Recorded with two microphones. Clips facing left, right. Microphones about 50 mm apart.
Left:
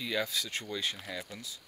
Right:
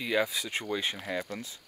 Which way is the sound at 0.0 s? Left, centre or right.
Right.